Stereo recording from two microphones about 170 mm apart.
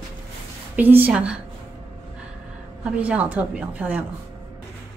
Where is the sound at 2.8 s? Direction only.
10° right (ahead or behind).